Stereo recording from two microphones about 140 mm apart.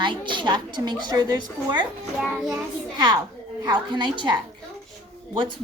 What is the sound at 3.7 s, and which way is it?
Speech, 30° right (ahead or behind).